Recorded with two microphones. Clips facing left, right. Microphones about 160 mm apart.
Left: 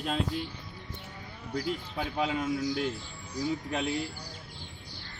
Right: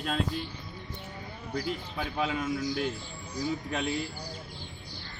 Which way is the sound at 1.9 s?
20° left (ahead or behind).